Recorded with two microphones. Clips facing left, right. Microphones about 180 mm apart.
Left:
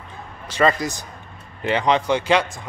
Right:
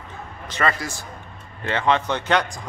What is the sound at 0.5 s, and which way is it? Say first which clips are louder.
Speech: left 5 dB; 15° left (ahead or behind).